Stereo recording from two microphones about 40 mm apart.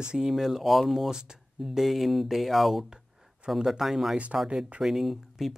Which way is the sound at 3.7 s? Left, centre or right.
Centre.